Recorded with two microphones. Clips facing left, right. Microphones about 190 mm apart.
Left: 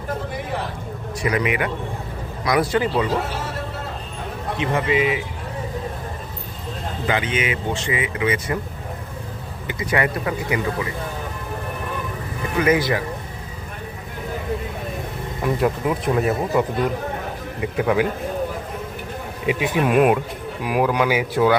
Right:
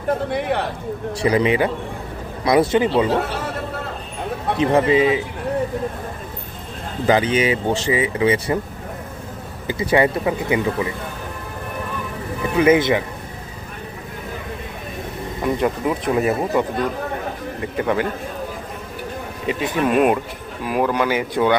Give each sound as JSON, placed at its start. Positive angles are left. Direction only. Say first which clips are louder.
{"t": 0.3, "sound": "a sound", "louder": "right 6 dB", "side_deg": -70}
{"t": 1.1, "sound": "speech", "louder": "right 4 dB", "side_deg": -30}
{"t": 4.5, "sound": "speech", "louder": "right 5 dB", "side_deg": -35}
{"t": 7.1, "sound": "speech", "louder": "right 7 dB", "side_deg": -35}
{"t": 9.6, "sound": "speech", "louder": "right 5 dB", "side_deg": -30}
{"t": 12.5, "sound": "speech", "louder": "right 4 dB", "side_deg": -25}
{"t": 15.4, "sound": "speech", "louder": "right 1 dB", "side_deg": 0}
{"t": 19.5, "sound": "speech", "louder": "even", "side_deg": 10}